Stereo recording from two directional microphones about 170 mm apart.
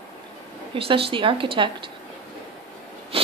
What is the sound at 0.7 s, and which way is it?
Speech, 35° right (ahead or behind).